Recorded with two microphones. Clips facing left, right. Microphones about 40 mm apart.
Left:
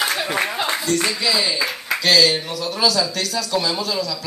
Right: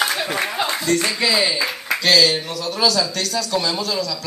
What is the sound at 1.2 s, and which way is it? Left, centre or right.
Speech, right.